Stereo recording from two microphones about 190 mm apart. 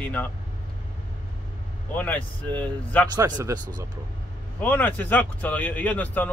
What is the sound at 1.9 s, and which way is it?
Speech, 10° left (ahead or behind).